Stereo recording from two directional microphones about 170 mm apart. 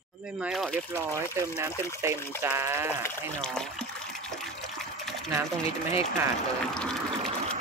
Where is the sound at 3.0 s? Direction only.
5° left (ahead or behind).